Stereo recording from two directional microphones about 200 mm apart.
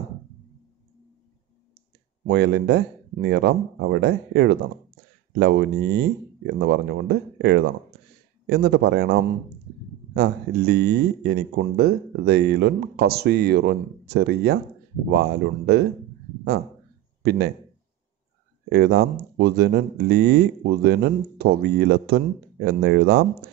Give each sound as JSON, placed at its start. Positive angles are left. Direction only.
{"t": 2.2, "sound": "speech", "side_deg": -55}
{"t": 8.5, "sound": "speech", "side_deg": -55}
{"t": 17.2, "sound": "speech", "side_deg": -50}
{"t": 18.7, "sound": "speech", "side_deg": -55}